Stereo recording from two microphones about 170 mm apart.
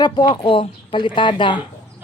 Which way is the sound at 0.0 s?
25° left (ahead or behind).